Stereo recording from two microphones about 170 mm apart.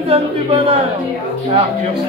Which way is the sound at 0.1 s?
35° right (ahead or behind).